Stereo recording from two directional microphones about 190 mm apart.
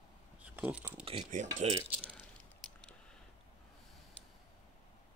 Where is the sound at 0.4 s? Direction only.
5° right (ahead or behind).